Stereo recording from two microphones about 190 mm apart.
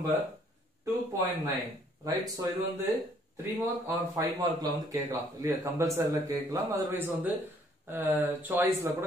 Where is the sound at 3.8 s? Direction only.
15° right (ahead or behind).